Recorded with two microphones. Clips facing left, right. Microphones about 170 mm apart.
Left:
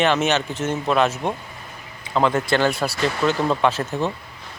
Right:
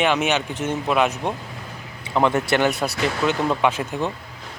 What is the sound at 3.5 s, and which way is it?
Speech, 10° right (ahead or behind).